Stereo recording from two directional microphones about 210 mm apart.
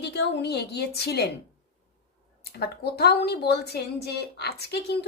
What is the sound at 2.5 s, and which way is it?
A woman's voice, 50° left (ahead or behind).